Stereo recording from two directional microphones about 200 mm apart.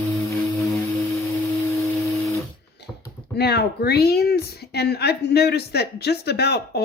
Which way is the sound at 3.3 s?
55° left (ahead or behind).